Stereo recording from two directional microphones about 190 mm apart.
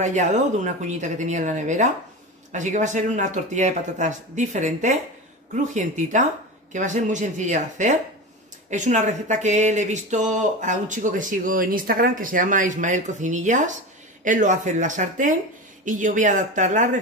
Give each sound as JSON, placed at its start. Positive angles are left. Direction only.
{"t": 0.0, "sound": "speech", "side_deg": -40}